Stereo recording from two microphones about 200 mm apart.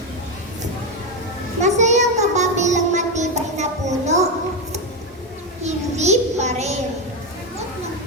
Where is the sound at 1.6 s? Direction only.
35° right (ahead or behind).